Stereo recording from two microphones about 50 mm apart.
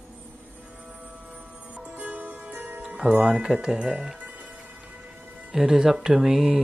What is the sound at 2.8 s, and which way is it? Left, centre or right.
Music, right.